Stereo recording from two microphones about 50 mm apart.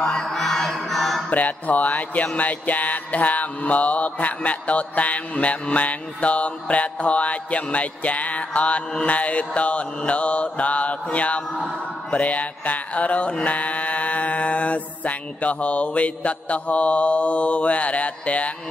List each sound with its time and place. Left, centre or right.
0.0 s music: centre
1.3 s speech: left
2.3 s mantra: left